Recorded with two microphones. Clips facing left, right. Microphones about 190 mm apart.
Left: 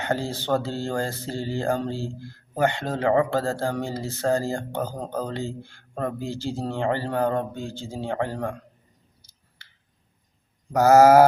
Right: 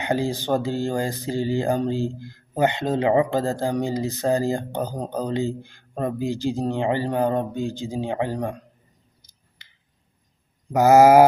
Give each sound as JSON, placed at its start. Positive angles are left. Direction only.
{"t": 0.0, "sound": "speech", "side_deg": -15}
{"t": 9.6, "sound": "a sound", "side_deg": -15}
{"t": 10.7, "sound": "speech", "side_deg": -15}